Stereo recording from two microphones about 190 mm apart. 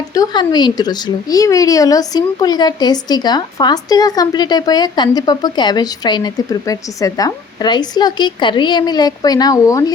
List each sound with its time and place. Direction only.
0.1 s speech: 20° left (ahead or behind)